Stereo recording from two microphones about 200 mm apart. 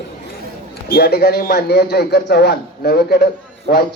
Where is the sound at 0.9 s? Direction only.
50° left (ahead or behind).